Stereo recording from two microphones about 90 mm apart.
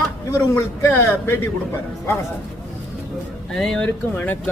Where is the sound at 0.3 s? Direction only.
30° left (ahead or behind).